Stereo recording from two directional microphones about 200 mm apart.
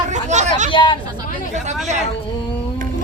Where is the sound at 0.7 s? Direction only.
25° left (ahead or behind).